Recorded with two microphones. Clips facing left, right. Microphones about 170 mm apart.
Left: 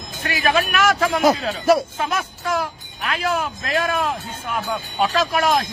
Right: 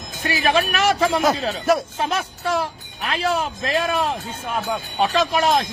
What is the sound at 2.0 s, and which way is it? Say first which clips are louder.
Speech: right 1 dB; 30° right (ahead or behind).